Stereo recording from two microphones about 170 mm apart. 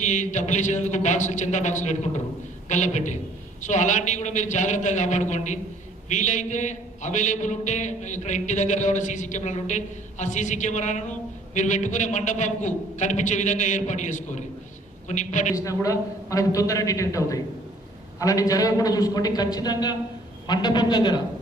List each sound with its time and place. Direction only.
0.0 s a man's voice: 45° left (ahead or behind)
15.5 s a man's voice: 20° left (ahead or behind)